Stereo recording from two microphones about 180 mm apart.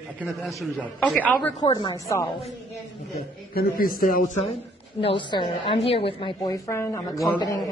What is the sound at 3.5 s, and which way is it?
Speech, 55° left (ahead or behind).